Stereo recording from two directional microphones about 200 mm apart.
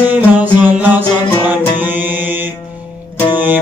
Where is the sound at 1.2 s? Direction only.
10° left (ahead or behind).